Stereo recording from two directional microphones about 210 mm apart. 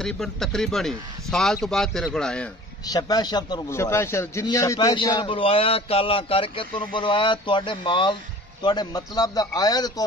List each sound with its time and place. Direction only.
0.0 s speech: centre (ahead or behind)
2.9 s a man's voice: 20° left (ahead or behind)